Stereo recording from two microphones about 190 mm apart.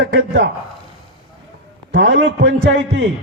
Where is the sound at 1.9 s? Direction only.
75° right (ahead or behind).